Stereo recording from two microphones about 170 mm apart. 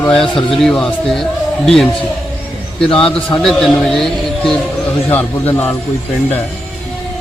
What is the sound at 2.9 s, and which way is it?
A man's voice, 5° left (ahead or behind).